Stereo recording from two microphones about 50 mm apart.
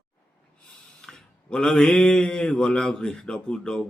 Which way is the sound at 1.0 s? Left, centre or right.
Centre.